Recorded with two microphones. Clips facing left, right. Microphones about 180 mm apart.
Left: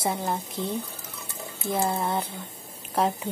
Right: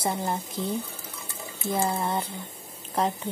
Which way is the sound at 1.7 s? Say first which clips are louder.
Left 1 dB; centre (ahead or behind).